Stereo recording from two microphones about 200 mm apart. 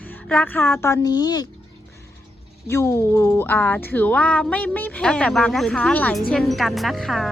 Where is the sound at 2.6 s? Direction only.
15° left (ahead or behind).